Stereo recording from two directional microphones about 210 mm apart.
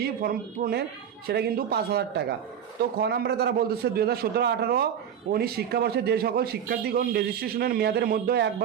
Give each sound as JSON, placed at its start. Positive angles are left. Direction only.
{"t": 0.0, "sound": "a man's voice", "side_deg": -45}